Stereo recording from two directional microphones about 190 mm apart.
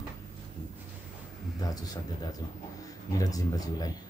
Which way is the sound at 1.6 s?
20° left (ahead or behind).